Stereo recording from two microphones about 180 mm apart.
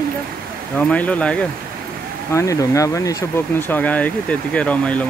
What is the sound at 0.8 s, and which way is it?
Speech, 10° left (ahead or behind).